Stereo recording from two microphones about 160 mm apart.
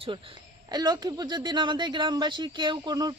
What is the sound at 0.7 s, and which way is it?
Speech, 25° right (ahead or behind).